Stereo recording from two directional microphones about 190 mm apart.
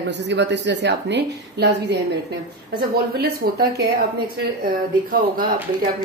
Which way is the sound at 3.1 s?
55° right (ahead or behind).